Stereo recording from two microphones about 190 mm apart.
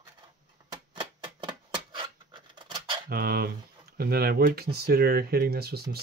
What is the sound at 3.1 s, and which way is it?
Speech, 55° right (ahead or behind).